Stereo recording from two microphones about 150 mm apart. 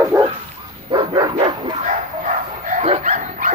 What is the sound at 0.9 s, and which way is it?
Dog, 30° right (ahead or behind).